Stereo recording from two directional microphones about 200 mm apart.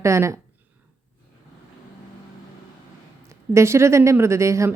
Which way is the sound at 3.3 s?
15° right (ahead or behind).